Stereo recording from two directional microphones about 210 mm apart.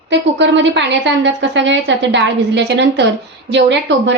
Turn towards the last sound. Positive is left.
turn(degrees=-60)  # may be behind; listen again after turning